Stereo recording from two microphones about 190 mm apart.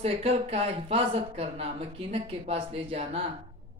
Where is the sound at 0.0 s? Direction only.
30° right (ahead or behind).